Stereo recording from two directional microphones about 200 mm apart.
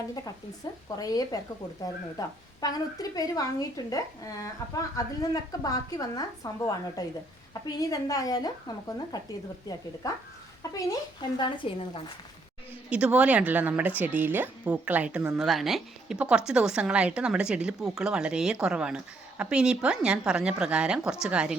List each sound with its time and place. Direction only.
0.9 s a woman's voice: 20° left (ahead or behind)
12.9 s speech: 5° right (ahead or behind)